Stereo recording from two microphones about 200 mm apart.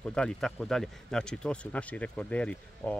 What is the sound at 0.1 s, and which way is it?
Speech, 5° left (ahead or behind).